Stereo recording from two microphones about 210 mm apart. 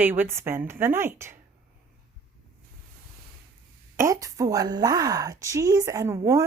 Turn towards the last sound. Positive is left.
turn(degrees=-15)  # may be behind; listen again after turning